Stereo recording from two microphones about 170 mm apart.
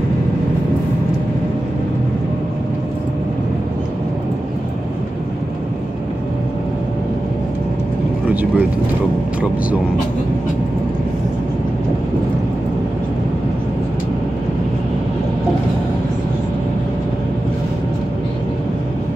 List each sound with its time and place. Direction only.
8.3 s vehicle: 10° right (ahead or behind)